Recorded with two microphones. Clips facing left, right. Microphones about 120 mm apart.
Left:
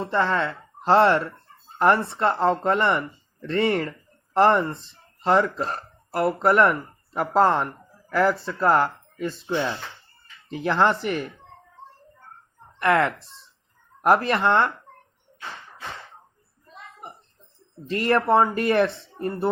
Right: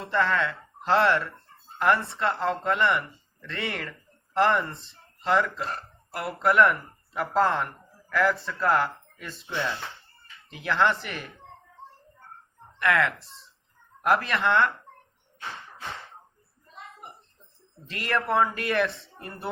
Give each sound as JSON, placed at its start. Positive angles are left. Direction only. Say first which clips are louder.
{"t": 0.0, "sound": "speech", "louder": "left 2 dB", "side_deg": 30}
{"t": 12.8, "sound": "speech", "louder": "left 4 dB", "side_deg": 35}
{"t": 13.1, "sound": "speech", "louder": "left 1 dB", "side_deg": 0}
{"t": 14.0, "sound": "speech", "louder": "left 5 dB", "side_deg": 35}
{"t": 17.8, "sound": "speech", "louder": "left 7 dB", "side_deg": 35}